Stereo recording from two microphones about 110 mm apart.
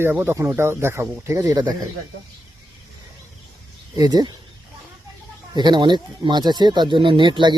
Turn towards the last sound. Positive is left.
turn(degrees=-45)  # may be behind; listen again after turning